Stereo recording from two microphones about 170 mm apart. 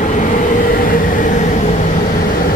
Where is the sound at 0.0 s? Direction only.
50° left (ahead or behind).